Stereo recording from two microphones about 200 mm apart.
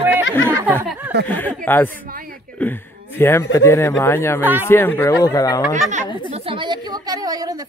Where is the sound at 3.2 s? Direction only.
15° left (ahead or behind).